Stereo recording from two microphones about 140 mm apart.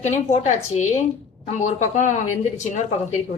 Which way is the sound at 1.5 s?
55° left (ahead or behind).